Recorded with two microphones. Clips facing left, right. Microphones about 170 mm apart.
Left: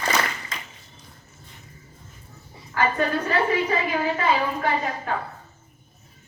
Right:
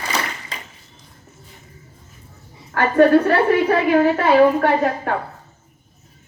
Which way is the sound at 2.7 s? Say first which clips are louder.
Right 10 dB; 60° right (ahead or behind).